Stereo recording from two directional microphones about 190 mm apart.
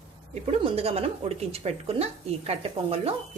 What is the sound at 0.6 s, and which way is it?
A woman's voice, 30° right (ahead or behind).